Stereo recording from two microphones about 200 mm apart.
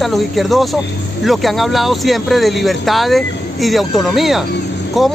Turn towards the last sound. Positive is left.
turn(degrees=0)  # may be behind; listen again after turning